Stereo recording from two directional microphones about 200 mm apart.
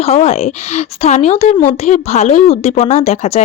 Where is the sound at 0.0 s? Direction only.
30° left (ahead or behind).